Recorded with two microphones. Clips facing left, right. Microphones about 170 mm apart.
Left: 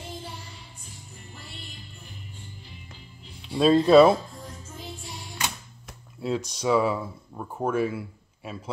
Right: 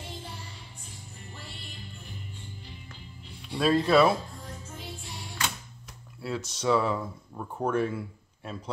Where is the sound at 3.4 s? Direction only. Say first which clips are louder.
Left 5 dB; 25° left (ahead or behind).